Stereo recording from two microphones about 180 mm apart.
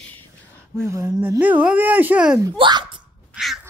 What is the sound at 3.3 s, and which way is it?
Crow, 5° right (ahead or behind).